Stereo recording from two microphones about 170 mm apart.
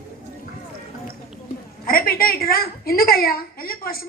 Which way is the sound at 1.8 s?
60° left (ahead or behind).